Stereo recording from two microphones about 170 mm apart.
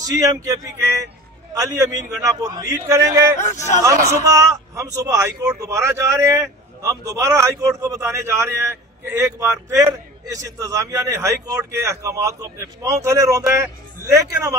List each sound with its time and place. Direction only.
0.0 s speech: 20° right (ahead or behind)
3.3 s a man's voice: 45° left (ahead or behind)
4.3 s a man's voice: 20° right (ahead or behind)